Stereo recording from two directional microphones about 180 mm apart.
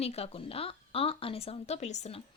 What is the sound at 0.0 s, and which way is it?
Speech, 35° left (ahead or behind).